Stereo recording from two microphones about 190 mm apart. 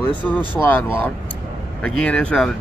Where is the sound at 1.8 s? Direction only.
5° left (ahead or behind).